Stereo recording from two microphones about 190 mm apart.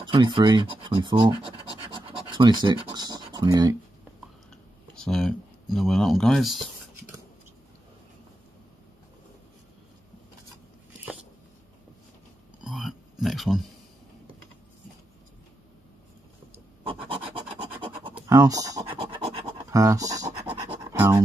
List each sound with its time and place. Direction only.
0.0 s speech: 25° right (ahead or behind)
2.0 s scratch: 25° right (ahead or behind)
4.9 s speech: centre (ahead or behind)
12.6 s a sound: centre (ahead or behind)
16.8 s scratch: 30° right (ahead or behind)